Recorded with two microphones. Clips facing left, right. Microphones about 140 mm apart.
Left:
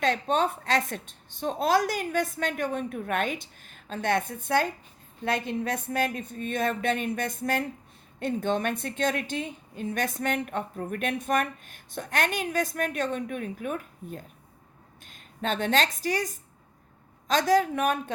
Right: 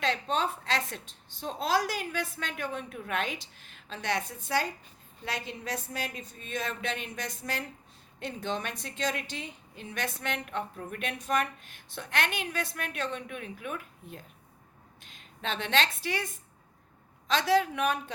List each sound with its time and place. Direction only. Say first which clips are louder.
0.0 s a woman's voice: left 5 dB; 50° left (ahead or behind)